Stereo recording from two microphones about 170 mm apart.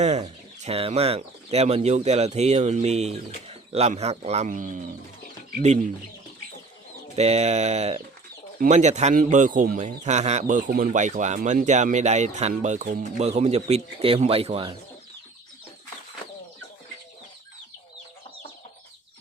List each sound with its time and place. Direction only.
0.0 s speech: 40° right (ahead or behind)
7.2 s a man's voice: 40° right (ahead or behind)